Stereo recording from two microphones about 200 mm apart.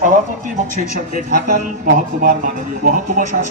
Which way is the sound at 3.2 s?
45° right (ahead or behind).